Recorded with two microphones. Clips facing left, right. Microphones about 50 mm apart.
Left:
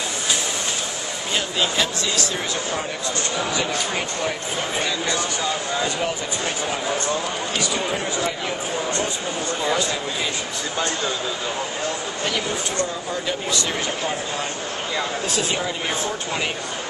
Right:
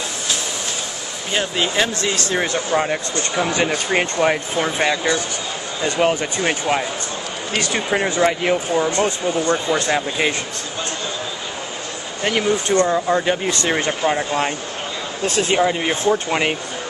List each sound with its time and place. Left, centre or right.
1.3 s speech: right
2.1 s speech: right
5.9 s speech: right
7.6 s speech: right
12.3 s speech: right
15.5 s speech: right